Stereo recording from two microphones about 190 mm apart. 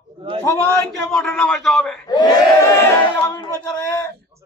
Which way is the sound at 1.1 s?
5° left (ahead or behind).